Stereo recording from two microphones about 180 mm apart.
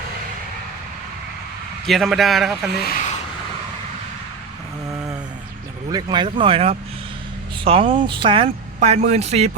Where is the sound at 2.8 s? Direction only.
45° left (ahead or behind).